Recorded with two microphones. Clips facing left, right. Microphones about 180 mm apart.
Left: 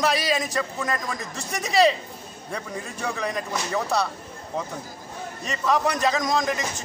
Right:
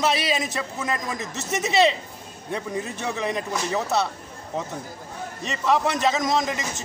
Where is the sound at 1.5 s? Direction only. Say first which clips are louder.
Right 5 dB; 5° right (ahead or behind).